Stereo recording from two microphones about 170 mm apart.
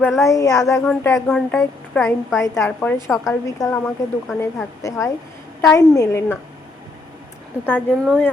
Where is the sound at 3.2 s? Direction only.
20° left (ahead or behind).